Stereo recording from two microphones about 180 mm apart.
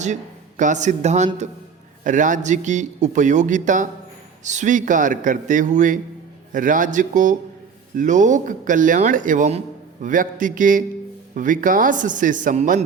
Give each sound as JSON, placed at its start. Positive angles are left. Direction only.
{"t": 0.0, "sound": "a man's voice", "side_deg": -40}